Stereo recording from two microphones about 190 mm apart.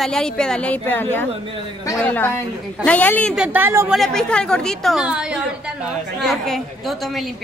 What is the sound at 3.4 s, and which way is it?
Speech, 10° right (ahead or behind).